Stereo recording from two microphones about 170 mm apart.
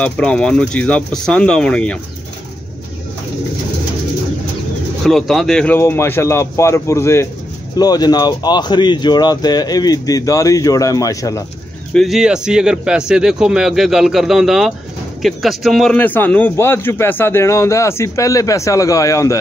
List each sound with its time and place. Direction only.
0.0 s a man's voice: 5° left (ahead or behind)
5.0 s a man's voice: centre (ahead or behind); by 11.4 s 20° left (ahead or behind)
11.9 s a man's voice: centre (ahead or behind); by 19.3 s 20° left (ahead or behind)